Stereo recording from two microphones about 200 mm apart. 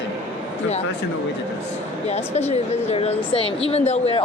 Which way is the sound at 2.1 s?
35° left (ahead or behind).